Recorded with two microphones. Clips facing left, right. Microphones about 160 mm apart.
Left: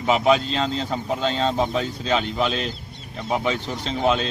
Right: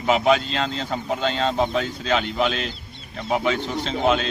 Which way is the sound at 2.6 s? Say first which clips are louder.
Left 2 dB; 45° left (ahead or behind).